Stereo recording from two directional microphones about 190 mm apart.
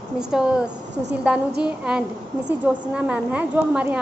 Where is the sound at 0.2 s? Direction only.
5° right (ahead or behind).